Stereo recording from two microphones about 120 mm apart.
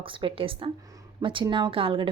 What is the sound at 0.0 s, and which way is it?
A woman's voice, 45° right (ahead or behind).